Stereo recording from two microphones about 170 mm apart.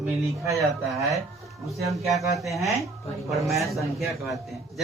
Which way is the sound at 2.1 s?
Centre (ahead or behind).